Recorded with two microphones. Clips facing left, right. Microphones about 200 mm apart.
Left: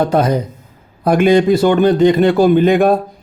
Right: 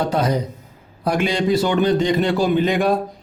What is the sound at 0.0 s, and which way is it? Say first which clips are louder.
Speech: left 5 dB; 55° left (ahead or behind).